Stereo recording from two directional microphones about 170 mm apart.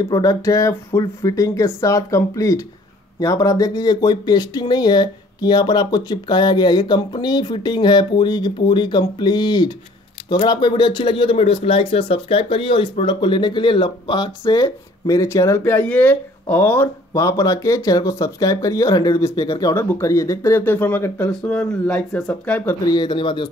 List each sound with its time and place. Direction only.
0.0 s speech: 25° left (ahead or behind)
19.7 s speech: 15° left (ahead or behind)
22.8 s speech: 25° left (ahead or behind)